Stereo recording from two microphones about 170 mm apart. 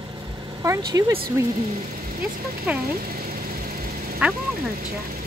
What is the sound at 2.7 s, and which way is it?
Speech, 5° right (ahead or behind).